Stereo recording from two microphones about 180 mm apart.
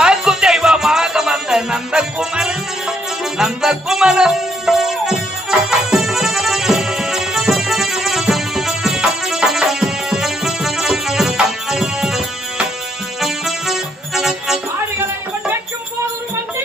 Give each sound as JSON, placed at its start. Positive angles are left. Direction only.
{"t": 0.0, "sound": "music", "side_deg": -5}